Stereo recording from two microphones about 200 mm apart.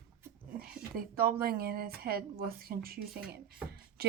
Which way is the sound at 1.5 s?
50° right (ahead or behind).